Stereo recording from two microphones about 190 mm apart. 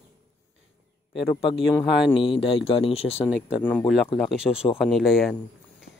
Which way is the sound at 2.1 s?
25° left (ahead or behind).